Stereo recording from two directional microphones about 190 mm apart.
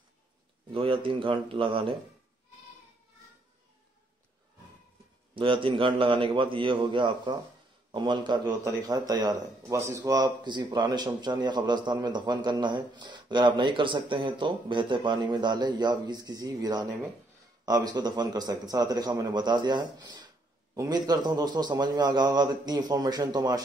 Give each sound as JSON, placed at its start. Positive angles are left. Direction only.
{"t": 0.7, "sound": "speech", "side_deg": -25}
{"t": 5.3, "sound": "speech", "side_deg": -25}